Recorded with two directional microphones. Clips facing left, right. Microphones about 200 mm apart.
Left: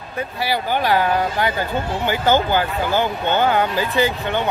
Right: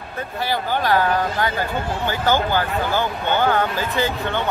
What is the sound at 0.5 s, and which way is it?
Speech, 15° left (ahead or behind).